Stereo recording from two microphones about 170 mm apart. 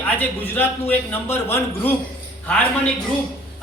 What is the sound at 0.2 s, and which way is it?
A man's voice, 10° left (ahead or behind).